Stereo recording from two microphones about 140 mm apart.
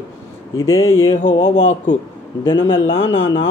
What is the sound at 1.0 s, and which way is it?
Speech, 40° left (ahead or behind).